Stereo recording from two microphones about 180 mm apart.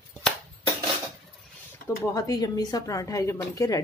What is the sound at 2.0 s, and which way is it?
Speech, 20° left (ahead or behind).